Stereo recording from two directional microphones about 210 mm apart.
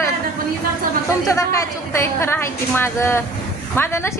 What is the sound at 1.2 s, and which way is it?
A woman's voice, 15° left (ahead or behind).